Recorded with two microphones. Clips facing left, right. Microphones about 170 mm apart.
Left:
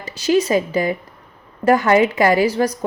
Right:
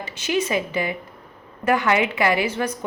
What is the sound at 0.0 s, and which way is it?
A woman's voice, 40° left (ahead or behind).